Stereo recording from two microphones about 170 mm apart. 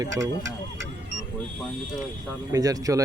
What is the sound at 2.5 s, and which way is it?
Speech, 20° right (ahead or behind).